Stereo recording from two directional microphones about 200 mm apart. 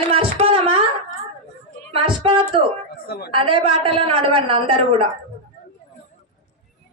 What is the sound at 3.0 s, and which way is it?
Speech, 55° left (ahead or behind).